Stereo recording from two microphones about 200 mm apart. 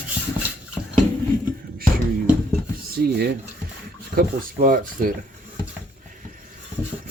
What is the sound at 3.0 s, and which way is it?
Rub, 50° right (ahead or behind).